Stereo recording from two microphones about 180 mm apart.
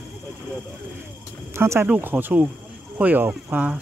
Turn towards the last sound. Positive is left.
turn(degrees=-10)  # may be behind; listen again after turning